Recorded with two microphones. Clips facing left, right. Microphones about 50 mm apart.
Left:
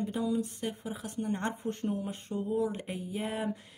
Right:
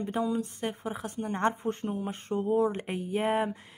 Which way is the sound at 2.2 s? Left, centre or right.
Right.